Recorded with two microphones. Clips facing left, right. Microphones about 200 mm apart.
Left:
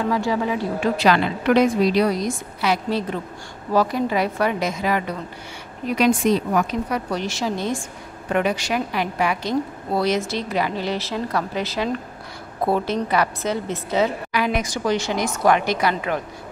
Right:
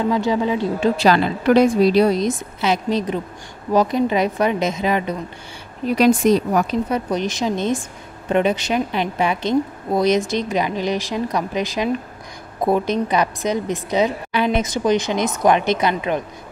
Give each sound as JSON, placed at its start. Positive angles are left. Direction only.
{"t": 0.1, "sound": "a woman's voice", "side_deg": -20}
{"t": 5.9, "sound": "speech", "side_deg": -40}
{"t": 6.9, "sound": "a woman's voice", "side_deg": -20}